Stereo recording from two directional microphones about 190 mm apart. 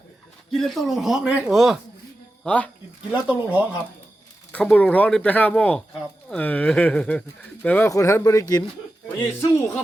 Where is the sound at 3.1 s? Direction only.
5° right (ahead or behind).